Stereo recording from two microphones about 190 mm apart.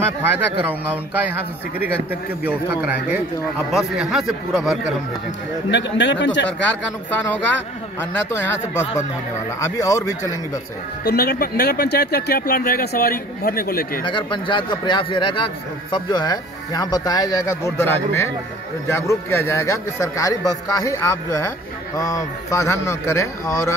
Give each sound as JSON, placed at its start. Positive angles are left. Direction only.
{"t": 0.0, "sound": "speech", "side_deg": -10}
{"t": 2.4, "sound": "speech", "side_deg": -10}
{"t": 5.7, "sound": "a man's voice", "side_deg": 70}
{"t": 8.0, "sound": "a man's voice", "side_deg": 10}
{"t": 11.1, "sound": "speech", "side_deg": 55}
{"t": 14.0, "sound": "a man's voice", "side_deg": 25}